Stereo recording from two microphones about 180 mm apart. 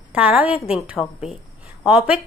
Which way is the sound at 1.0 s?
30° left (ahead or behind).